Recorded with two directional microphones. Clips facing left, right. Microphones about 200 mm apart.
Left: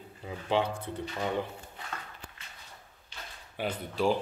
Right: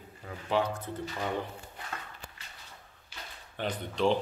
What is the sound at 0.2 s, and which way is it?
Speech, 20° left (ahead or behind).